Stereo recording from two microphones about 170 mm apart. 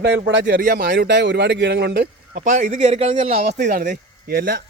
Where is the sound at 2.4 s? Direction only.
45° right (ahead or behind).